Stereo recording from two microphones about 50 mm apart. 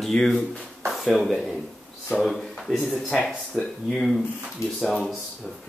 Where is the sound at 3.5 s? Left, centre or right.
Left.